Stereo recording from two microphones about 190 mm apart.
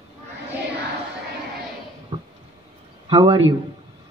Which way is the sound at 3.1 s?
25° right (ahead or behind).